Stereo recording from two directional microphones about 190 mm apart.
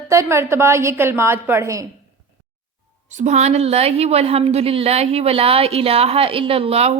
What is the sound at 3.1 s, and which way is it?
A woman's voice, 35° right (ahead or behind).